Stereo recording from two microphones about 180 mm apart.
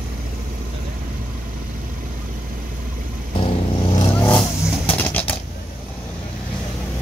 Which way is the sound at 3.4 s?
25° left (ahead or behind).